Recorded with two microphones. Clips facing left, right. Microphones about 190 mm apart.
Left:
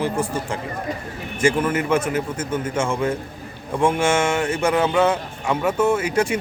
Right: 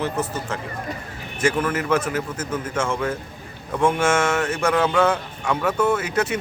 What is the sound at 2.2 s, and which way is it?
Speech, 30° left (ahead or behind).